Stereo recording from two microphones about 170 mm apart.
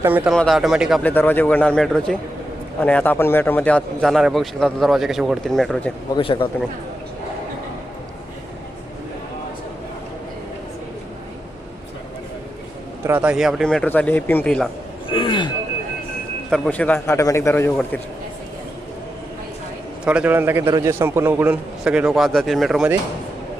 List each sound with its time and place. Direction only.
0.3 s speech: centre (ahead or behind)
1.0 s speech: 10° left (ahead or behind)
6.1 s speech: 30° left (ahead or behind)
13.1 s speech: 10° right (ahead or behind)
15.1 s a sound: 30° left (ahead or behind)
16.5 s speech: 10° left (ahead or behind)
20.1 s a man's voice: 10° right (ahead or behind)